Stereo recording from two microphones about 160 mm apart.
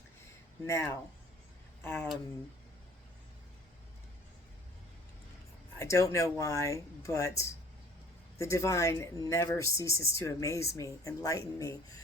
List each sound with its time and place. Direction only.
0.7 s speech: 15° left (ahead or behind)
5.8 s speech: 20° left (ahead or behind)